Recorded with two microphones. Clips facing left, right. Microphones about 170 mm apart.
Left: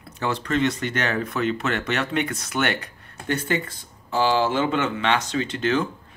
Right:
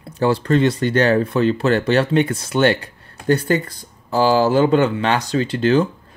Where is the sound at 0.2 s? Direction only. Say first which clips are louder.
Right 7 dB; 35° right (ahead or behind).